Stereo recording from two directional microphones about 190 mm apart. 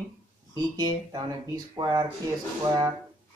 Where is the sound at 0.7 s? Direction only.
20° right (ahead or behind).